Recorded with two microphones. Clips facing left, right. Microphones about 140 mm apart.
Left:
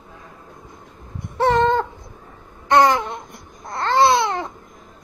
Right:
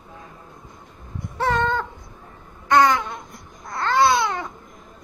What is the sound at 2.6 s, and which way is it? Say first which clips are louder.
Babbling: left 2 dB; 30° left (ahead or behind).